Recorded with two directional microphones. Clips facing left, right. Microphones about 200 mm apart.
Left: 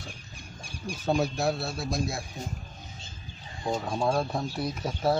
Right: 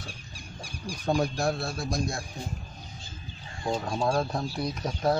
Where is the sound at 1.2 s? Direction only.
5° left (ahead or behind).